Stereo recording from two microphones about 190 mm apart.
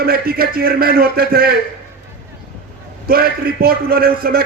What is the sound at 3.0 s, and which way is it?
A man's voice, 50° right (ahead or behind).